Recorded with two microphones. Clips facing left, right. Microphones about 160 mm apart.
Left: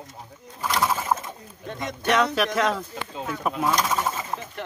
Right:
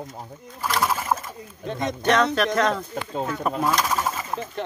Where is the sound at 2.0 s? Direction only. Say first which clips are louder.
Right 1 dB; 5° left (ahead or behind).